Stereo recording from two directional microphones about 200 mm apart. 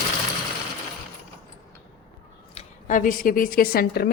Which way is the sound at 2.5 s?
40° left (ahead or behind).